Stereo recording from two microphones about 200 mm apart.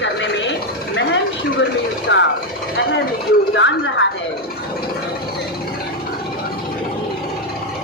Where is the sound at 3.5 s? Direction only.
65° left (ahead or behind).